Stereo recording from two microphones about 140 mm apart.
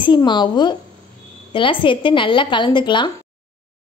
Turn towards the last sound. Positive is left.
turn(degrees=35)  # may be behind; listen again after turning